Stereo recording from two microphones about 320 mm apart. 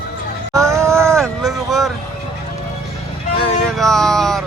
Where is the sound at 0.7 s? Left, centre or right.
Centre.